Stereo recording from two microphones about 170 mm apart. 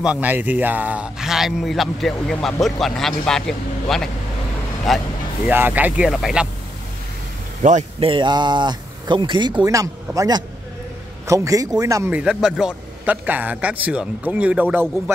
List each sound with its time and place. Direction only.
0.0 s speech: 10° right (ahead or behind)
5.5 s a man's voice: 10° right (ahead or behind)
7.6 s speech: 45° right (ahead or behind)
8.1 s speech: 25° right (ahead or behind)
12.1 s a man's voice: 5° right (ahead or behind)